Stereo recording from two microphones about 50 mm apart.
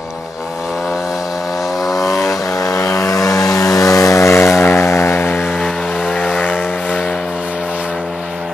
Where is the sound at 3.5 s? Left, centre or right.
Left.